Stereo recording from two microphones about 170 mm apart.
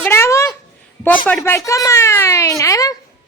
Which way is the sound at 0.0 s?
15° left (ahead or behind).